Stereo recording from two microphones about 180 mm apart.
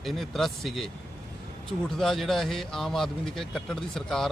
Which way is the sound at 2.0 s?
Centre (ahead or behind).